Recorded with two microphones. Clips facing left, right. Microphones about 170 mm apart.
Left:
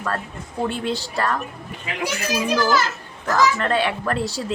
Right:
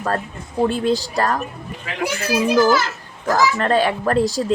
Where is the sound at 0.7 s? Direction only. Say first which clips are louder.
Right 6 dB; 40° right (ahead or behind).